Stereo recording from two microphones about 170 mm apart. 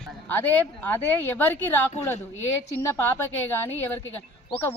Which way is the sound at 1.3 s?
10° left (ahead or behind).